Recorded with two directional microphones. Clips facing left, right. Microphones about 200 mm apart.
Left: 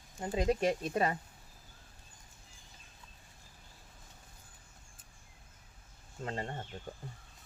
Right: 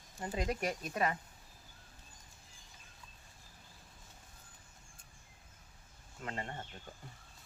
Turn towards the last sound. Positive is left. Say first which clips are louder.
# left 4 dB
turn(degrees=30)  # may be behind; listen again after turning